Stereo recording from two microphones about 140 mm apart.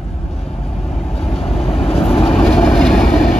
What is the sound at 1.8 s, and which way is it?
Vehicle, 45° left (ahead or behind).